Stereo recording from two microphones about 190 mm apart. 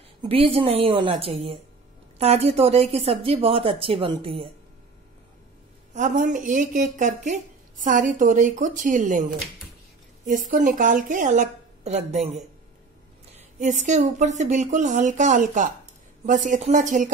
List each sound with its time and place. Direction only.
0.2 s speech: 30° right (ahead or behind)
5.9 s speech: 40° right (ahead or behind)
10.5 s speech: 45° right (ahead or behind)
13.6 s speech: 40° right (ahead or behind)